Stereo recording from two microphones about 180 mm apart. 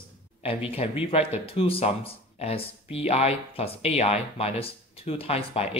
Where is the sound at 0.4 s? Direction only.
30° left (ahead or behind).